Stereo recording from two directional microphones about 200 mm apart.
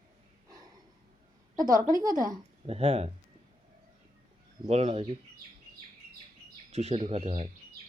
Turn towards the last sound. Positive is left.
turn(degrees=-30)  # may be behind; listen again after turning